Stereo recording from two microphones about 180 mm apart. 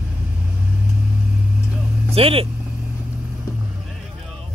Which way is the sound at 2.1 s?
30° right (ahead or behind).